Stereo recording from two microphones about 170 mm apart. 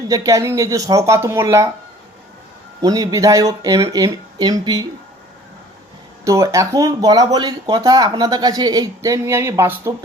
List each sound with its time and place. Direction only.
0.1 s speech: 20° right (ahead or behind)
2.8 s speech: 20° right (ahead or behind)
6.2 s speech: 20° right (ahead or behind)